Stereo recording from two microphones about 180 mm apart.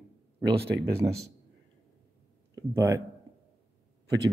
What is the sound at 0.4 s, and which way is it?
Speech, 65° right (ahead or behind).